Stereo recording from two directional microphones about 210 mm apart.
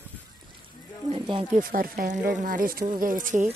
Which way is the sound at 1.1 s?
25° right (ahead or behind).